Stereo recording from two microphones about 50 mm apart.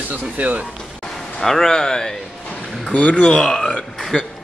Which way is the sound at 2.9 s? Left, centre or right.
Left.